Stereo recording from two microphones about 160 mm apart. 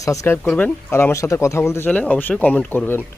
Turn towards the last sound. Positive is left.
turn(degrees=10)  # may be behind; listen again after turning